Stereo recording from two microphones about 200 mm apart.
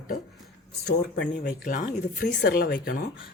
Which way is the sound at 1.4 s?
45° left (ahead or behind).